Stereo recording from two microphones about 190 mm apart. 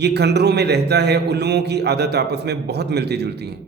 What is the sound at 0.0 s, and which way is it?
A man's voice, 60° right (ahead or behind).